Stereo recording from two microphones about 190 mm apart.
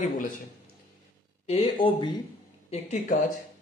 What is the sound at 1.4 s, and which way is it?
A man's voice, 30° left (ahead or behind).